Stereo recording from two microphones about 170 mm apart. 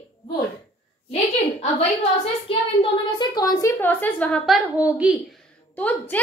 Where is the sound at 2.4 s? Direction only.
30° left (ahead or behind); by 4.6 s 5° left (ahead or behind).